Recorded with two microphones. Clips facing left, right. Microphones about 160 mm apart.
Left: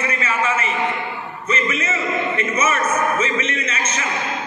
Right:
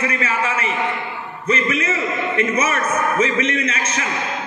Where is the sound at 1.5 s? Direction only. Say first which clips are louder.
Right 3 dB; 65° right (ahead or behind).